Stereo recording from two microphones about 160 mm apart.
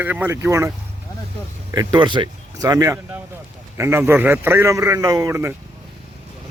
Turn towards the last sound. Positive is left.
turn(degrees=-15)  # may be behind; listen again after turning